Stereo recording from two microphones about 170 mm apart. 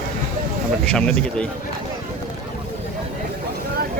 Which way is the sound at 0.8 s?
5° left (ahead or behind).